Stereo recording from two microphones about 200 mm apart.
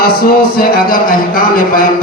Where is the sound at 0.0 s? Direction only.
50° left (ahead or behind).